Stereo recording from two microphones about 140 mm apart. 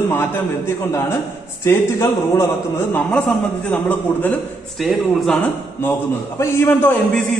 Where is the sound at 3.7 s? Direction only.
10° left (ahead or behind).